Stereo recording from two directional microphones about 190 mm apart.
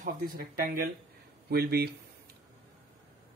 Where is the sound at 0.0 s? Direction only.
45° right (ahead or behind).